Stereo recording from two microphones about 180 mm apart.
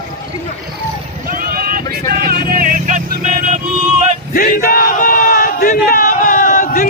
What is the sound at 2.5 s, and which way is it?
Vehicle, 50° right (ahead or behind).